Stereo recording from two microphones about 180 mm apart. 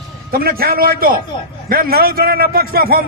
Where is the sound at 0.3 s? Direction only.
55° right (ahead or behind).